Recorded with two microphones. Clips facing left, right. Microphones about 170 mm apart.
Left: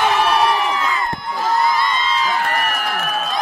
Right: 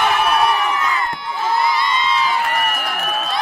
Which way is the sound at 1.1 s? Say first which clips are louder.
Left 1 dB; 45° left (ahead or behind).